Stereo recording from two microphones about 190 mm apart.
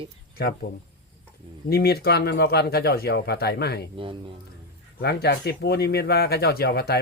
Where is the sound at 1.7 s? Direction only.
55° left (ahead or behind).